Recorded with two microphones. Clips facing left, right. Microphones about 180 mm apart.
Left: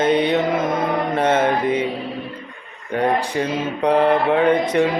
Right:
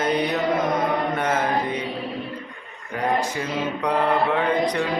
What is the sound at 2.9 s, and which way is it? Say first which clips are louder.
Mantra: left 4 dB; 30° left (ahead or behind).